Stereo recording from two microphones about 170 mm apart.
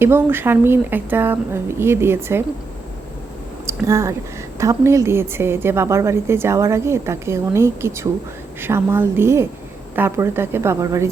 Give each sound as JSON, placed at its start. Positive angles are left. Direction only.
{"t": 0.0, "sound": "a woman's voice", "side_deg": -15}
{"t": 3.7, "sound": "a woman's voice", "side_deg": -15}